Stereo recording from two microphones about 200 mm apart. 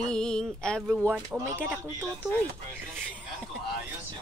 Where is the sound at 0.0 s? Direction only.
5° left (ahead or behind).